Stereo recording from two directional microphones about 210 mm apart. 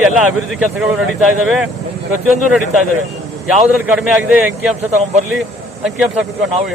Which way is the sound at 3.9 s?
5° right (ahead or behind).